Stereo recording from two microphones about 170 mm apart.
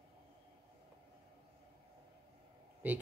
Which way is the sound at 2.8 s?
10° right (ahead or behind).